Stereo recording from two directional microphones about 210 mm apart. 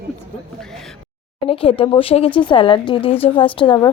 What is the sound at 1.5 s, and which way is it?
A woman's voice, 25° left (ahead or behind).